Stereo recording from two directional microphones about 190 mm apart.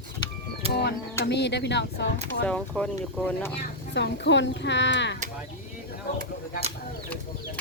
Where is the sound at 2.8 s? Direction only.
5° left (ahead or behind).